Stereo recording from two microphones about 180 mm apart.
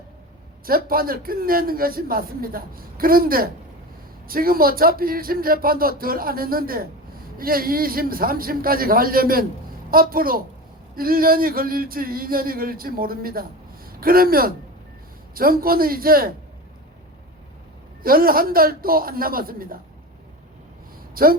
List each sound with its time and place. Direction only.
0.9 s a woman's voice: 55° right (ahead or behind)
18.0 s a woman's voice: 55° right (ahead or behind)
21.2 s a woman's voice: 55° right (ahead or behind)